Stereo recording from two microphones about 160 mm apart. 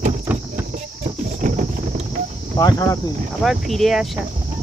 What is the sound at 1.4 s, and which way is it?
Clip-clop, 55° right (ahead or behind).